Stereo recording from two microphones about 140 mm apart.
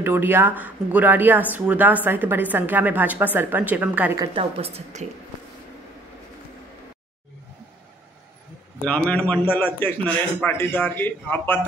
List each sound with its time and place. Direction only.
0.0 s speech: 15° right (ahead or behind)
4.4 s a woman's voice: 45° right (ahead or behind)
8.8 s a man's voice: 10° left (ahead or behind)